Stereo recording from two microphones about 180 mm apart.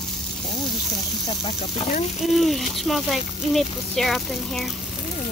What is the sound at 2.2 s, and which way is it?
Speech, centre (ahead or behind).